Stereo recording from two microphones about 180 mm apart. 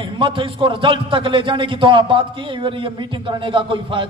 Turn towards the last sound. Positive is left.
turn(degrees=-25)  # may be behind; listen again after turning